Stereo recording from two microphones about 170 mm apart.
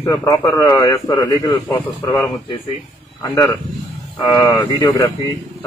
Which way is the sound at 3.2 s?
20° left (ahead or behind).